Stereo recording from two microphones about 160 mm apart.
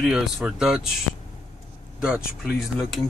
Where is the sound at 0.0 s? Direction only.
Centre (ahead or behind).